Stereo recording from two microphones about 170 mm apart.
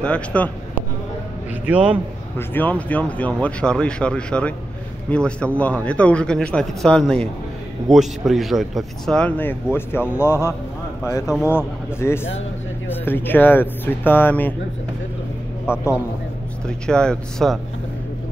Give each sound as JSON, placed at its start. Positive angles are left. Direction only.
{"t": 0.0, "sound": "speech", "side_deg": 5}
{"t": 1.7, "sound": "speech", "side_deg": -5}
{"t": 2.3, "sound": "a man's voice", "side_deg": 10}
{"t": 15.7, "sound": "a man's voice", "side_deg": 15}